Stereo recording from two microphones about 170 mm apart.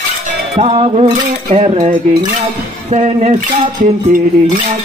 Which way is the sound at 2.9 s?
45° right (ahead or behind).